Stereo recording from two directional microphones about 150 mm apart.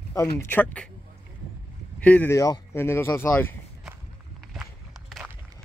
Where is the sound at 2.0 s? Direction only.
10° left (ahead or behind).